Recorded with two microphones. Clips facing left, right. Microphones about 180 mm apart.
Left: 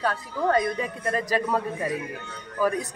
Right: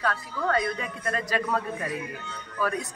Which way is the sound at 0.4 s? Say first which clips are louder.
Left 4 dB; 15° left (ahead or behind).